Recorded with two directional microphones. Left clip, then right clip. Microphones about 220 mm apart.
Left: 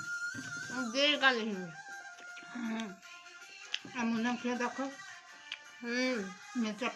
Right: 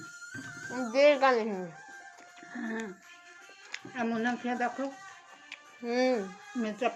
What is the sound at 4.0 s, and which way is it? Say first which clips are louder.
Speech: right 5 dB; 50° left (ahead or behind).